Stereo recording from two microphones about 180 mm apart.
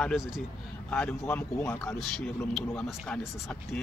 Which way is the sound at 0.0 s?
Centre (ahead or behind).